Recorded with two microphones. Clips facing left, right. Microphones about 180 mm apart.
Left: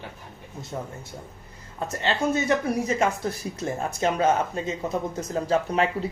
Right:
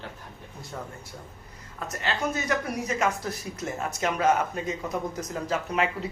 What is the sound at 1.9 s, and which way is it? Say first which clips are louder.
Speech: left 4 dB; 30° left (ahead or behind).